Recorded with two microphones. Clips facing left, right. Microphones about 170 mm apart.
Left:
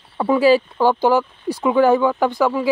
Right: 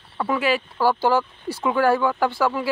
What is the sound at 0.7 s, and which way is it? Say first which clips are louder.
Speech: left 4 dB; 20° left (ahead or behind).